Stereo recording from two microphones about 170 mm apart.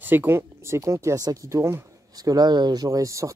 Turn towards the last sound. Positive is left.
turn(degrees=-20)  # may be behind; listen again after turning